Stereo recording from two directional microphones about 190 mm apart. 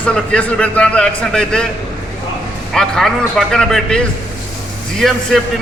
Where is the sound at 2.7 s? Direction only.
Centre (ahead or behind).